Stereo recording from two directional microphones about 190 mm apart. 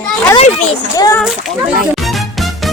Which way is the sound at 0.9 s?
20° left (ahead or behind).